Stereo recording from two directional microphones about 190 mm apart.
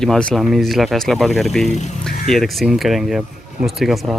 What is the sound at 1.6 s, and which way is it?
Speech, 35° left (ahead or behind).